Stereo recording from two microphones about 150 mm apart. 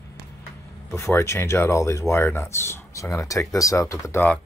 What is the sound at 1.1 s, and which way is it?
Speech, 15° left (ahead or behind).